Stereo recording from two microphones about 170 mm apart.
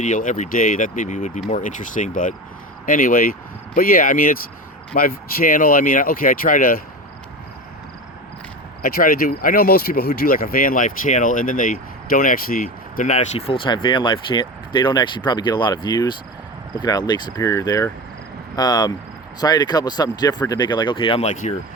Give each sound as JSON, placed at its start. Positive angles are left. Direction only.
{"t": 0.0, "sound": "speech", "side_deg": 50}
{"t": 8.8, "sound": "speech", "side_deg": 60}
{"t": 13.0, "sound": "speech", "side_deg": 45}